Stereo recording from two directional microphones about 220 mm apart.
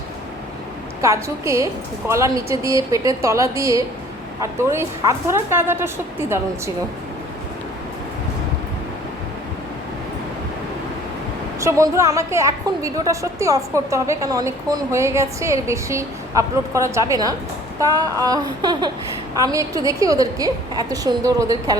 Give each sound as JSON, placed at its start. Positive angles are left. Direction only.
{"t": 1.0, "sound": "a woman's voice", "side_deg": -15}
{"t": 11.6, "sound": "a woman's voice", "side_deg": -15}